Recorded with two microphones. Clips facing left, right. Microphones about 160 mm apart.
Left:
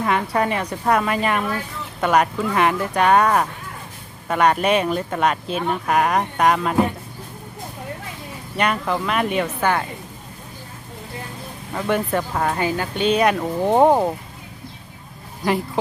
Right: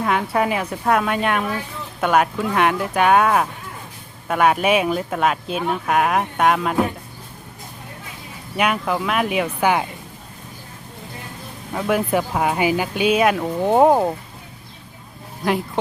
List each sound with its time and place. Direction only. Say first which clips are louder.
0.0 s speech: even; centre (ahead or behind)
8.5 s speech: right 1 dB; 5° right (ahead or behind)
11.7 s speech: right 2 dB; 5° right (ahead or behind)
15.4 s speech: even; centre (ahead or behind)